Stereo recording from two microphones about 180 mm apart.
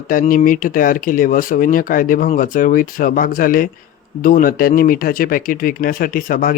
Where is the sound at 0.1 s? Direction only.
50° left (ahead or behind).